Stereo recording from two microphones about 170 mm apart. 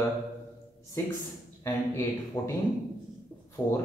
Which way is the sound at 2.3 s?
25° left (ahead or behind).